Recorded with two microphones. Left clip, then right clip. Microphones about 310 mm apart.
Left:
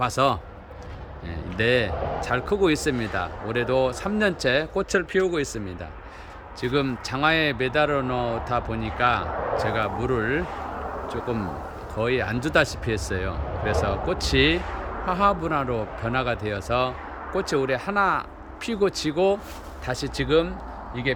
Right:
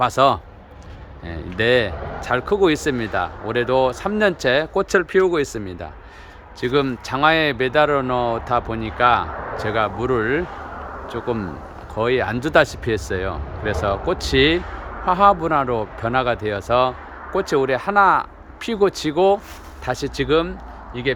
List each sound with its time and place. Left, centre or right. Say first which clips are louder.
0.0 s speech: right 6 dB; centre
10.4 s speech: right 1 dB; left
11.1 s speech: right 7 dB; centre